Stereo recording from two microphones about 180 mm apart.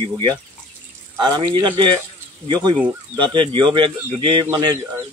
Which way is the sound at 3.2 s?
25° right (ahead or behind).